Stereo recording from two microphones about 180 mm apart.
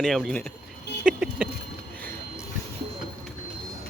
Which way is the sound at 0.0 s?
Centre (ahead or behind).